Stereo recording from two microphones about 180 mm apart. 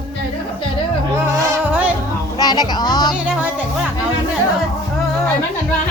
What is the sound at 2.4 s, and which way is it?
Music, 20° left (ahead or behind).